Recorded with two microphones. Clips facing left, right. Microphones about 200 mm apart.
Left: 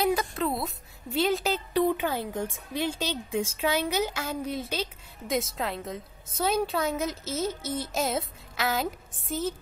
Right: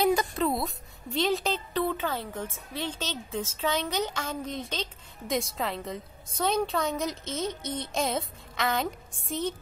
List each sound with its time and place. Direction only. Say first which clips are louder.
0.0 s a woman's voice: right 1 dB; centre (ahead or behind)